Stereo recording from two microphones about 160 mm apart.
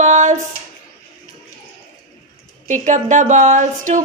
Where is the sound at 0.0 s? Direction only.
50° right (ahead or behind).